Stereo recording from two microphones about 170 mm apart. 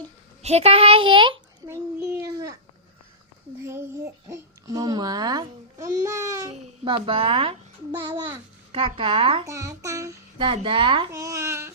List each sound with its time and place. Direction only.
0.4 s a child's voice: 40° right (ahead or behind)
1.6 s a child's voice: 15° right (ahead or behind)
3.6 s a child's voice: 15° right (ahead or behind)
6.5 s a child's voice: 30° right (ahead or behind)
9.5 s a child's voice: 20° right (ahead or behind)
10.3 s a child's voice: 30° right (ahead or behind)
11.1 s speech: 20° right (ahead or behind)